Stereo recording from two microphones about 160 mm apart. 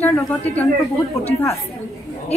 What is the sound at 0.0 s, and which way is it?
Speech, 10° left (ahead or behind).